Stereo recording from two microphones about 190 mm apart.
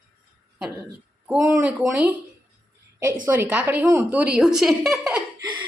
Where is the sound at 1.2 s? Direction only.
5° right (ahead or behind).